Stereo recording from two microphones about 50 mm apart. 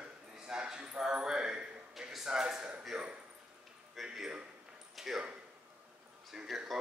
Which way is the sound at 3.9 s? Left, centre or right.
Centre.